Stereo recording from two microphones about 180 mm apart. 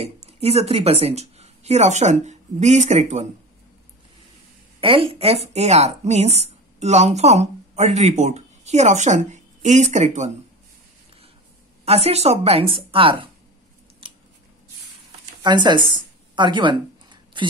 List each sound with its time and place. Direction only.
0.0 s speech: 35° right (ahead or behind)
4.7 s a woman's voice: 30° right (ahead or behind)
11.8 s a woman's voice: 35° right (ahead or behind)
14.0 s scissors: 30° right (ahead or behind)
15.4 s speech: 25° right (ahead or behind)
15.9 s a sound: 25° right (ahead or behind)